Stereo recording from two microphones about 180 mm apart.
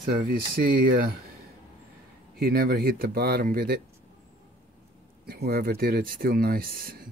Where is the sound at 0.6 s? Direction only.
55° right (ahead or behind).